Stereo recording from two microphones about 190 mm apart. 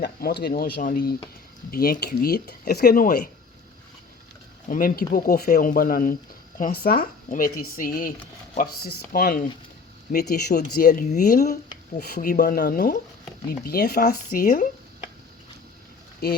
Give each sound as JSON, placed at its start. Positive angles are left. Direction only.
{"t": 0.0, "sound": "speech", "side_deg": 55}
{"t": 4.7, "sound": "speech", "side_deg": 50}
{"t": 10.6, "sound": "speech", "side_deg": 45}
{"t": 14.0, "sound": "speech", "side_deg": 45}
{"t": 16.2, "sound": "speech", "side_deg": 55}